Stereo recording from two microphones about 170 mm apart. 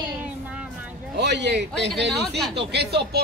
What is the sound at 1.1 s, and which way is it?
A man's voice, 90° right.